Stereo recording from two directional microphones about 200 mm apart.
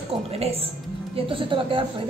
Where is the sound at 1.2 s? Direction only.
25° right (ahead or behind).